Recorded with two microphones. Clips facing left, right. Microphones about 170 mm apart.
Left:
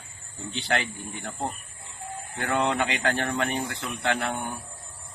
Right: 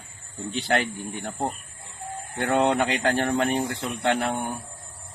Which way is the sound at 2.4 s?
35° right (ahead or behind).